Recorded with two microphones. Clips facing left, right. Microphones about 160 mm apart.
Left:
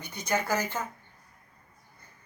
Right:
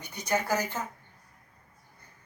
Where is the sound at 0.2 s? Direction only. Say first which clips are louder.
Even; 40° right (ahead or behind).